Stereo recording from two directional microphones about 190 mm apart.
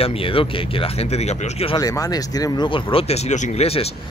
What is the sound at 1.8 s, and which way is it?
A man's voice, 20° left (ahead or behind).